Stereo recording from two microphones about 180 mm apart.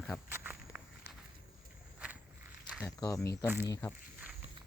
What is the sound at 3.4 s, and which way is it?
Speech, 10° right (ahead or behind).